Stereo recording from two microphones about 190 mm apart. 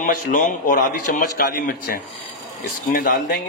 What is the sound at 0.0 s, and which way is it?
Speech, 45° left (ahead or behind).